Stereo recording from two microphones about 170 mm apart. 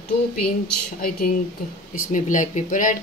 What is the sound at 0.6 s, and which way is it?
Speech, 60° left (ahead or behind).